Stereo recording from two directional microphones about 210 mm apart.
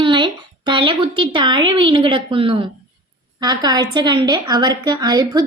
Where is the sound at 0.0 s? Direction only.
20° right (ahead or behind).